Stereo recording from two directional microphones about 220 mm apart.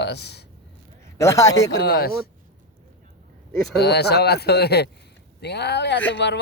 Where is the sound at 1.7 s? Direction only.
45° left (ahead or behind).